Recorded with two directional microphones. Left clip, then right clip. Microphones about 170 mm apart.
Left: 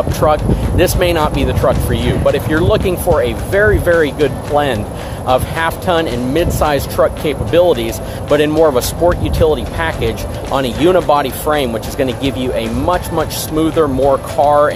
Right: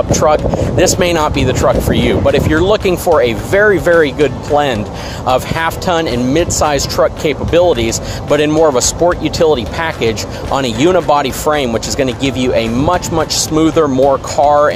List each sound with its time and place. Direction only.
0.2 s speech: 40° right (ahead or behind)